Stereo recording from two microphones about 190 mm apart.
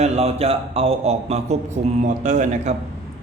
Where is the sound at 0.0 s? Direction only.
35° right (ahead or behind).